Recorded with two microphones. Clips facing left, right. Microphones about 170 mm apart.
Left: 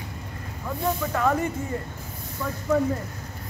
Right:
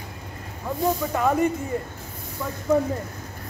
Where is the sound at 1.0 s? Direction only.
20° right (ahead or behind).